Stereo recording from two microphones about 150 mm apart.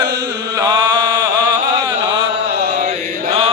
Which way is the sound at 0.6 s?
25° right (ahead or behind).